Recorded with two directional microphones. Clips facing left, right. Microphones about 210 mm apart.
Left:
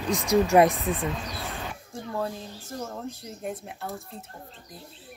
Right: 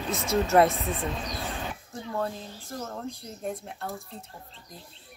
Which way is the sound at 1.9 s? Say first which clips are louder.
Left 1 dB; centre (ahead or behind).